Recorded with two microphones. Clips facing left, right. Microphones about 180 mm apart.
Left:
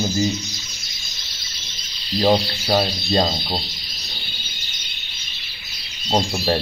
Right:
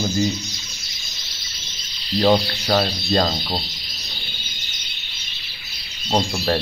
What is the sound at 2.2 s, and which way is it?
Speech, 20° left (ahead or behind).